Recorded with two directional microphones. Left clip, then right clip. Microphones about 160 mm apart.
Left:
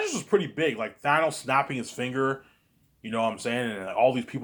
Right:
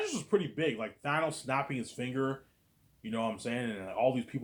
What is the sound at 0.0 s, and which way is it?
Speech, 30° left (ahead or behind).